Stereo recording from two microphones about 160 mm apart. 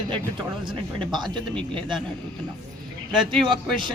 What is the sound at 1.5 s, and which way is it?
Speech, 5° left (ahead or behind).